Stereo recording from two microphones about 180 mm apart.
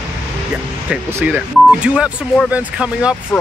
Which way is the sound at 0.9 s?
5° right (ahead or behind).